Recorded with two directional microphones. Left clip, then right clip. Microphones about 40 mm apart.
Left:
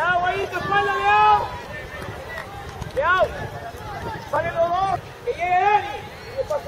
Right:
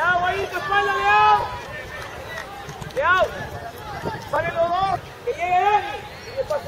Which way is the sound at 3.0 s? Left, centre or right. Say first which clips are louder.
Even; left.